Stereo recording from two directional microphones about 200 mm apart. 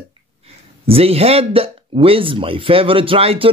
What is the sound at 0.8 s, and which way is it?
Speech, 30° right (ahead or behind).